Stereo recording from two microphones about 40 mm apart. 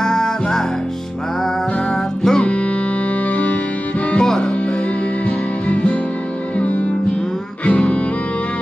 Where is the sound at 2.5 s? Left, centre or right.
Left.